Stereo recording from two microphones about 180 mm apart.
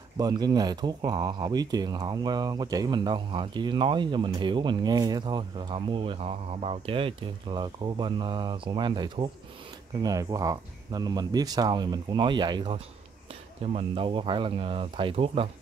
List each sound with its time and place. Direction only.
0.2 s speech: 20° right (ahead or behind)